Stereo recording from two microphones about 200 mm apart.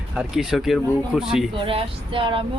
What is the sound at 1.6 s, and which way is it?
Speech, 25° right (ahead or behind).